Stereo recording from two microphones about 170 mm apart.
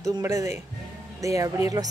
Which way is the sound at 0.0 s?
20° right (ahead or behind).